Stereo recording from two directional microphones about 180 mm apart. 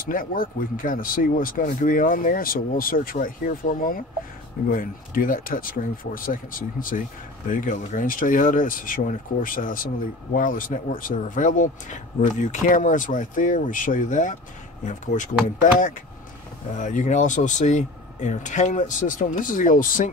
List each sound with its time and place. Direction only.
0.1 s speech: 50° left (ahead or behind)
16.7 s speech: 45° left (ahead or behind)